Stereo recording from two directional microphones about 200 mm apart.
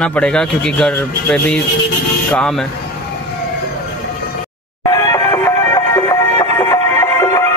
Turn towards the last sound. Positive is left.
turn(degrees=15)  # may be behind; listen again after turning